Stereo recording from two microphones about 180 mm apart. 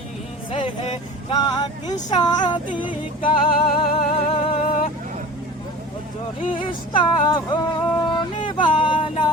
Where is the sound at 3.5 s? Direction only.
55° left (ahead or behind).